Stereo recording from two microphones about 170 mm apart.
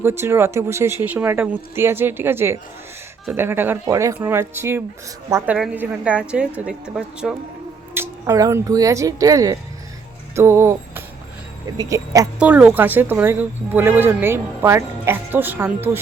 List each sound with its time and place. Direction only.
0.0 s a woman's voice: 15° right (ahead or behind)
7.9 s a woman's voice: 15° right (ahead or behind)
12.4 s a woman's voice: 5° right (ahead or behind)